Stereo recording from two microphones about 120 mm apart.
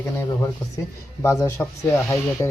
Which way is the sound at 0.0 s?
25° left (ahead or behind).